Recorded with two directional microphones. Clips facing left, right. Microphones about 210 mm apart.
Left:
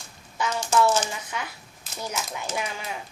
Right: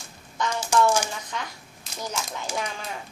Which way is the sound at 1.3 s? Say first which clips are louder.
Even; 10° left (ahead or behind).